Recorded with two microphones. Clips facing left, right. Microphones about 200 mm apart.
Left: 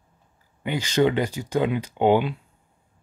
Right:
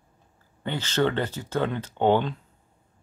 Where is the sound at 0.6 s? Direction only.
15° left (ahead or behind).